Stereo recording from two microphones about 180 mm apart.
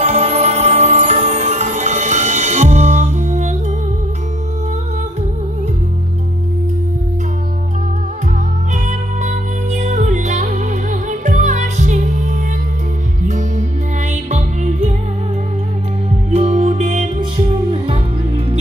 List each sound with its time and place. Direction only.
0.0 s music: 35° right (ahead or behind)
8.8 s music: 40° right (ahead or behind)
16.3 s music: 40° right (ahead or behind)